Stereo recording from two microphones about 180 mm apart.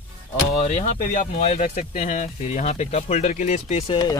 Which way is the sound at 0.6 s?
45° left (ahead or behind).